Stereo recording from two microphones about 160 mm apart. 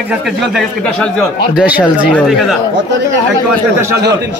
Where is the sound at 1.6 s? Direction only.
10° right (ahead or behind).